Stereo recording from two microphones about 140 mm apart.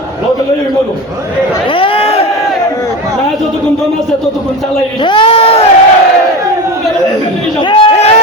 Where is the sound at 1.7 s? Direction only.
40° left (ahead or behind).